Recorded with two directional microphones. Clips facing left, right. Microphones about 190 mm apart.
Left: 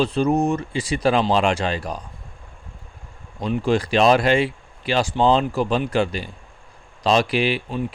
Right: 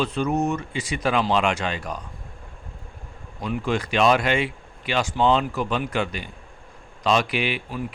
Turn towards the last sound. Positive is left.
turn(degrees=30)  # may be behind; listen again after turning